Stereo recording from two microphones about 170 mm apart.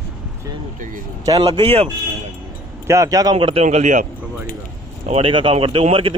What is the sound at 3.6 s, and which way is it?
Speech, 45° right (ahead or behind).